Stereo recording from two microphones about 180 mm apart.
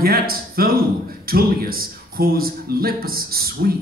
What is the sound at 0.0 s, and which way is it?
Speech, 55° right (ahead or behind).